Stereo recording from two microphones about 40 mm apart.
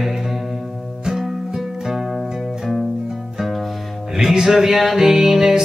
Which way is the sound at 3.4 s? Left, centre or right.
Centre.